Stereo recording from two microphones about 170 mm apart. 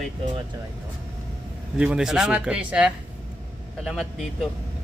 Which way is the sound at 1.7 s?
5° right (ahead or behind).